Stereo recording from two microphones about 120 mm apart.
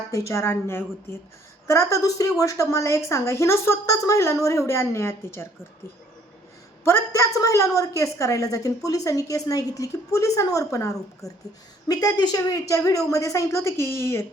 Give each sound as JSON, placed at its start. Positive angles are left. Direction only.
{"t": 0.1, "sound": "a woman's voice", "side_deg": 25}
{"t": 6.8, "sound": "a woman's voice", "side_deg": 25}